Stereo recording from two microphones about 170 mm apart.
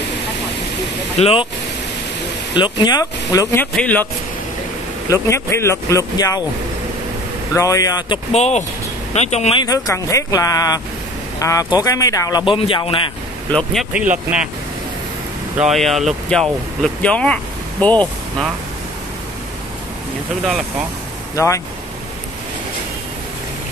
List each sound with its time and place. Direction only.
1.1 s speech: 35° left (ahead or behind)
2.5 s speech: 25° left (ahead or behind)
3.7 s speech: 10° left (ahead or behind)
5.1 s speech: 15° left (ahead or behind)
7.5 s speech: 20° left (ahead or behind)
8.3 s speech: 40° left (ahead or behind)
9.6 s speech: 20° left (ahead or behind)
13.5 s speech: 5° left (ahead or behind)
15.6 s speech: centre (ahead or behind)
21.4 s speech: 20° left (ahead or behind)